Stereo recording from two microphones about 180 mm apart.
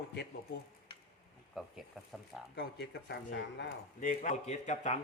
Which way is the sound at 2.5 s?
65° left (ahead or behind).